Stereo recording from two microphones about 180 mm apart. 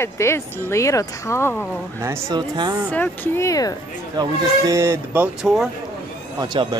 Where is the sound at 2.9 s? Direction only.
10° left (ahead or behind).